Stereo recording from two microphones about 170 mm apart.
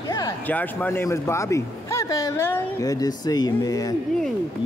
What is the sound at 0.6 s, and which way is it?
Speech, 10° left (ahead or behind).